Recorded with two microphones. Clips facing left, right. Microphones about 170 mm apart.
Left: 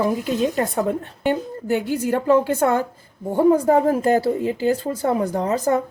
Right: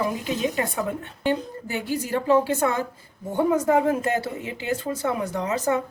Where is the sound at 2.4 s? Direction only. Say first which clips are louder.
Left 4 dB; 50° left (ahead or behind).